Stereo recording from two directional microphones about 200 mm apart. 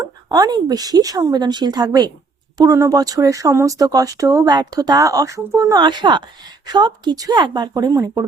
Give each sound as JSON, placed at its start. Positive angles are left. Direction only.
{"t": 0.0, "sound": "speech", "side_deg": -20}